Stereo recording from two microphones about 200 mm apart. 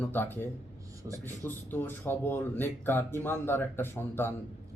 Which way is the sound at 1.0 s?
10° right (ahead or behind).